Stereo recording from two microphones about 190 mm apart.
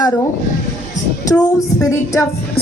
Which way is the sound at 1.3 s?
20° left (ahead or behind).